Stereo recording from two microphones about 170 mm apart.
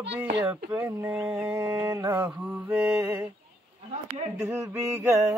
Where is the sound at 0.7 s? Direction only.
10° right (ahead or behind).